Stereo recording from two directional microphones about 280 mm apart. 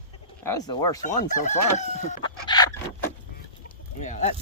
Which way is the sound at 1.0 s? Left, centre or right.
Left.